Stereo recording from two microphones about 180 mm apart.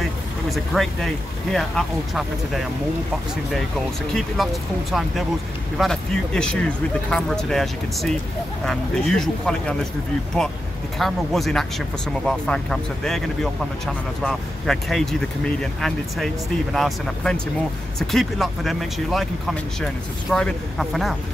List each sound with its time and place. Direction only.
0.5 s speech: centre (ahead or behind)
4.4 s speech: centre (ahead or behind)
5.8 s speech: 5° left (ahead or behind)
11.0 s speech: centre (ahead or behind)